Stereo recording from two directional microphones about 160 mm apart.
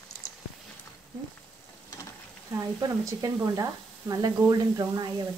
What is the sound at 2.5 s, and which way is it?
Speech, 20° right (ahead or behind).